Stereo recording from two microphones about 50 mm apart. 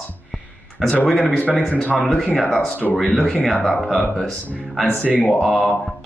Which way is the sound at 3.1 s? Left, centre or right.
Centre.